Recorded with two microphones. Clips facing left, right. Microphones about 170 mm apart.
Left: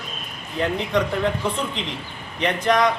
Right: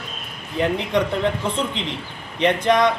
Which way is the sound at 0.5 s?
15° right (ahead or behind).